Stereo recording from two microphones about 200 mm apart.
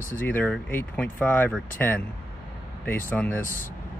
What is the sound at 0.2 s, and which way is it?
Speech, 10° left (ahead or behind).